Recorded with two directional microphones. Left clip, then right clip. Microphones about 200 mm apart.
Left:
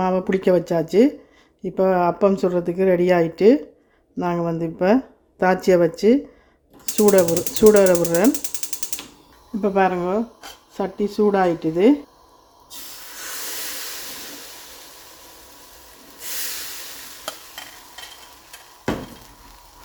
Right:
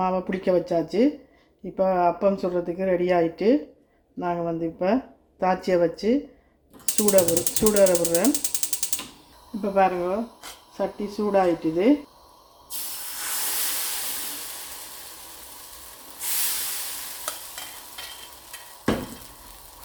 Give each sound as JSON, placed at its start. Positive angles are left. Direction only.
{"t": 0.0, "sound": "speech", "side_deg": 60}
{"t": 9.6, "sound": "speech", "side_deg": 60}